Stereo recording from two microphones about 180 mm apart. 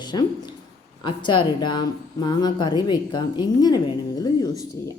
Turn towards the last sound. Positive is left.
turn(degrees=20)  # may be behind; listen again after turning